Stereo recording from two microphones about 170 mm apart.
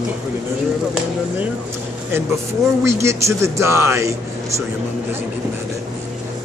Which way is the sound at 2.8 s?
15° right (ahead or behind).